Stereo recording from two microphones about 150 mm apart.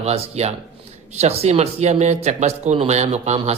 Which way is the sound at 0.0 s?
45° right (ahead or behind).